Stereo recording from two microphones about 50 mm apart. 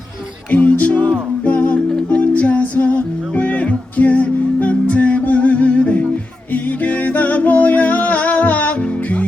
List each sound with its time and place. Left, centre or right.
0.5 s music: left
6.5 s music: left